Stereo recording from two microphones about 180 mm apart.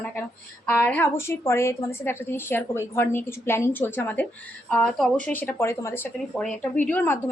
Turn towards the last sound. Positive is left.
turn(degrees=10)  # may be behind; listen again after turning